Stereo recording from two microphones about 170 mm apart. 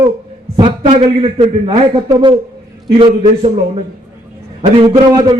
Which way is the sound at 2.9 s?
30° right (ahead or behind).